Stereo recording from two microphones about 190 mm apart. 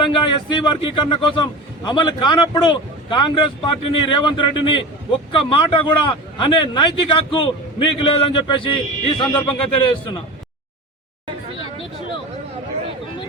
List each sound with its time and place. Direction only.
0.0 s a man's voice: 25° left (ahead or behind)